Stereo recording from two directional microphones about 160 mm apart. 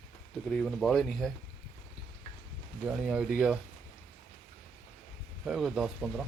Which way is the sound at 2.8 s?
5° right (ahead or behind).